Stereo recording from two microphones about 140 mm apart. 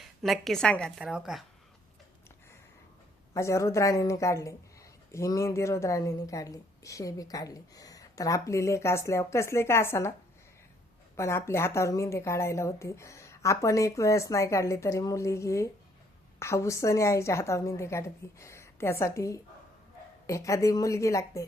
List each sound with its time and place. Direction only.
0.0 s a woman's voice: centre (ahead or behind)
1.0 s speech: 5° right (ahead or behind)
3.3 s a woman's voice: 20° left (ahead or behind)
11.2 s a woman's voice: 20° left (ahead or behind)